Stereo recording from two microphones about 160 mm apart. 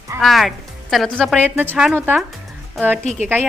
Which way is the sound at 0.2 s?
Centre (ahead or behind).